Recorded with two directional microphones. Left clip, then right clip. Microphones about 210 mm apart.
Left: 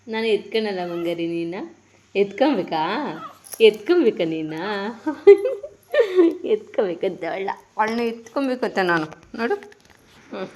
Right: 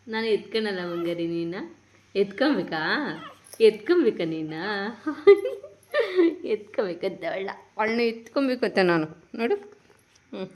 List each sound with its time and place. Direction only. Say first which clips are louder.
0.1 s a woman's voice: left 4 dB; centre (ahead or behind)
7.2 s a woman's voice: left 4 dB; 5° left (ahead or behind)
7.8 s a woman's voice: left 2 dB; 15° right (ahead or behind)